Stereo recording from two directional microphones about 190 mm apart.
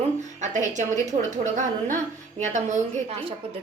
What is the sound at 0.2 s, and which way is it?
A woman's voice, 40° right (ahead or behind).